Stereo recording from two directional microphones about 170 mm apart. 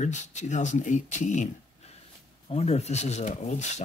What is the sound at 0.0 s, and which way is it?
Speech, 45° left (ahead or behind).